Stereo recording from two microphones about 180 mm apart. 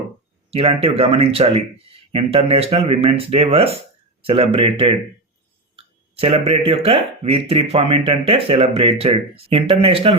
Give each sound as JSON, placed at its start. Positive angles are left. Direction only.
{"t": 0.5, "sound": "speech", "side_deg": -35}